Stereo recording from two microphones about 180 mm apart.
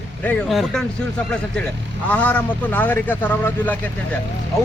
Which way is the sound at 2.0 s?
10° left (ahead or behind).